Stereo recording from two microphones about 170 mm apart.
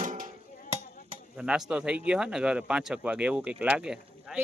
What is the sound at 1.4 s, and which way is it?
Speech, 5° right (ahead or behind).